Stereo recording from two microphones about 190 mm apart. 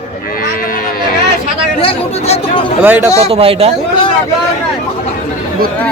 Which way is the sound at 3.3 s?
30° right (ahead or behind).